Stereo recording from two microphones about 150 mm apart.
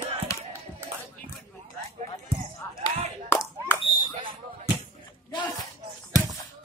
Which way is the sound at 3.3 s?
15° left (ahead or behind).